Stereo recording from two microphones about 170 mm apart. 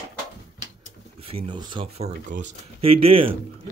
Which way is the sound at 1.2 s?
35° right (ahead or behind).